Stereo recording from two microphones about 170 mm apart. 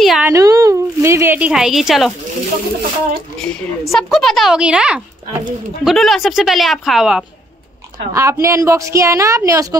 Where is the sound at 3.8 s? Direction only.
Centre (ahead or behind).